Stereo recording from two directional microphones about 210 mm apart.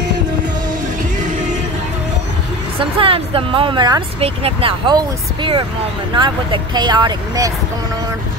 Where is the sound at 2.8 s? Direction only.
25° right (ahead or behind).